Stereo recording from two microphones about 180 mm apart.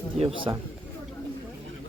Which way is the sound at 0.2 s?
35° right (ahead or behind).